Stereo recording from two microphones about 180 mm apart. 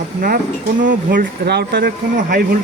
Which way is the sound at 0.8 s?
45° right (ahead or behind).